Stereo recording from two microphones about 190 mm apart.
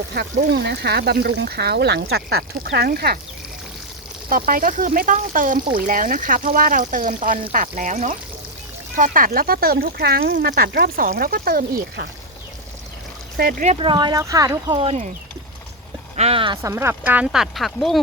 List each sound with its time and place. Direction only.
0.1 s speech: 60° right (ahead or behind)
4.3 s speech: 45° right (ahead or behind)
13.3 s speech: 50° right (ahead or behind)
13.7 s speech: 25° right (ahead or behind)
14.7 s speech: 30° right (ahead or behind)
16.1 s speech: 30° right (ahead or behind)
16.6 s speech: 15° right (ahead or behind)